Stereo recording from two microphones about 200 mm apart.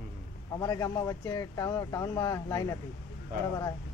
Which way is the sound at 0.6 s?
20° left (ahead or behind).